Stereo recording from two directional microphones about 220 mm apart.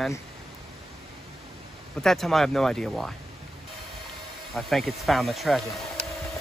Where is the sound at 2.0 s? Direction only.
Centre (ahead or behind).